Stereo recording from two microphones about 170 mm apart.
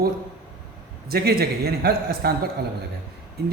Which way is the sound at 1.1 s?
65° right (ahead or behind).